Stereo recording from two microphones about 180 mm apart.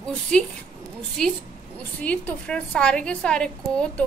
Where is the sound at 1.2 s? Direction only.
5° left (ahead or behind).